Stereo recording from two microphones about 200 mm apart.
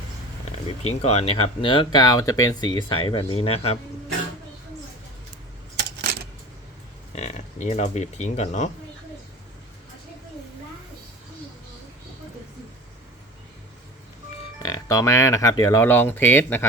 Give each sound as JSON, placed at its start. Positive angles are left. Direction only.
{"t": 0.8, "sound": "speech", "side_deg": 35}
{"t": 7.2, "sound": "speech", "side_deg": 35}
{"t": 14.6, "sound": "speech", "side_deg": 20}